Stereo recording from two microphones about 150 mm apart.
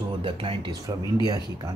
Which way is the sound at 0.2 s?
35° right (ahead or behind).